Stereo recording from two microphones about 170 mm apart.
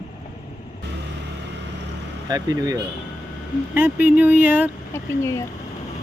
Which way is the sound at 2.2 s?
20° right (ahead or behind).